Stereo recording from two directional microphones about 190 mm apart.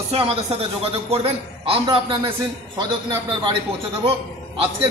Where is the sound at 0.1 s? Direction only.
30° right (ahead or behind).